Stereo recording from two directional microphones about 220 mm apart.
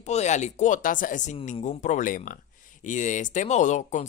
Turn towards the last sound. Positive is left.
turn(degrees=35)  # may be behind; listen again after turning